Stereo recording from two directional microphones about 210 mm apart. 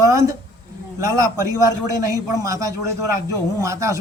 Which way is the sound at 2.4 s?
15° right (ahead or behind).